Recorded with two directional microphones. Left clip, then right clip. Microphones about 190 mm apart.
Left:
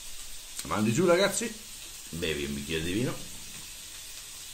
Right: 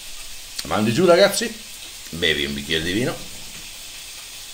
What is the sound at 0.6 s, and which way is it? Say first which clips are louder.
Speech: right 8 dB; 20° left (ahead or behind).